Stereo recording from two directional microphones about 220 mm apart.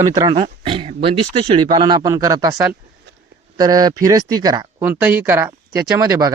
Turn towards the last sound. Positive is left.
turn(degrees=-15)  # may be behind; listen again after turning